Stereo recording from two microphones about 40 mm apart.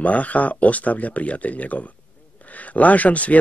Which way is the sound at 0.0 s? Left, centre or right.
Left.